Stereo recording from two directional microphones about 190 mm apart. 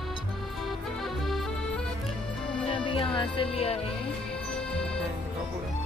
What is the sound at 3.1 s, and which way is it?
Music, 25° left (ahead or behind).